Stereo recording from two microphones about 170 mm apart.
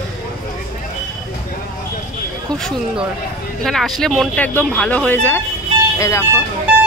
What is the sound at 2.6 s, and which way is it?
Speech, centre (ahead or behind).